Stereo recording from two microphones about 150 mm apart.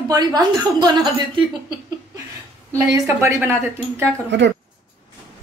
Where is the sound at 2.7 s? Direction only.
20° right (ahead or behind).